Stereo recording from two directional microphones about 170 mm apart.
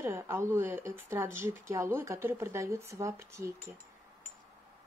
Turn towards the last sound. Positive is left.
turn(degrees=-15)  # may be behind; listen again after turning